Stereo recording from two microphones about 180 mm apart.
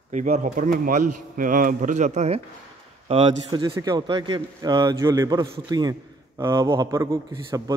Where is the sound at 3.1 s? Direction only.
25° right (ahead or behind).